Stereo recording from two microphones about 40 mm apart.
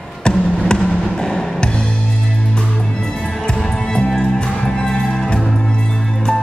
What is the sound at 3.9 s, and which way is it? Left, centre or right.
Music, centre.